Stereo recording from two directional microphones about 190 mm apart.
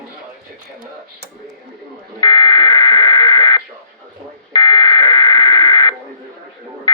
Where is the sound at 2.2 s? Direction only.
20° left (ahead or behind).